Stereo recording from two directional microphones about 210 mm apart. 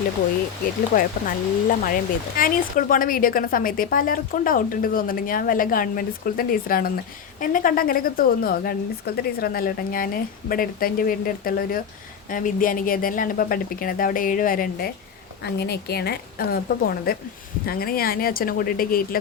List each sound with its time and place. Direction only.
0.9 s speech: 40° left (ahead or behind)